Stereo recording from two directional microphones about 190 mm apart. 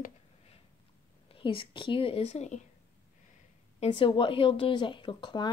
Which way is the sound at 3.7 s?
25° left (ahead or behind).